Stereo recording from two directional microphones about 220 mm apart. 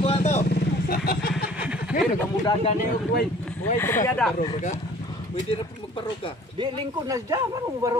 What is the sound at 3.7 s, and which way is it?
Speech, 10° left (ahead or behind).